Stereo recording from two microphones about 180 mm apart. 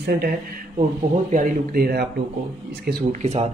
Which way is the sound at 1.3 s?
50° right (ahead or behind).